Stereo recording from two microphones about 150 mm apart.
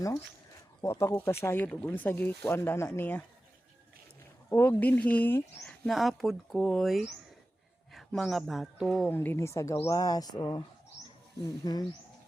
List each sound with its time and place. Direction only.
0.8 s speech: 20° left (ahead or behind)
4.4 s a man's voice: 15° left (ahead or behind)
9.0 s speech: 15° left (ahead or behind)